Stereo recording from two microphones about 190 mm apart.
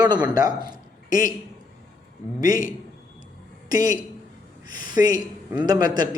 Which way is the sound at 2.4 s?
20° right (ahead or behind).